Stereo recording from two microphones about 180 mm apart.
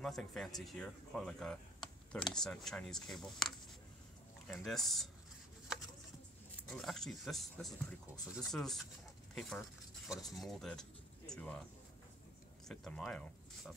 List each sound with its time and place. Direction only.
0.0 s speech: centre (ahead or behind)
6.7 s speech: centre (ahead or behind)
12.6 s speech: centre (ahead or behind)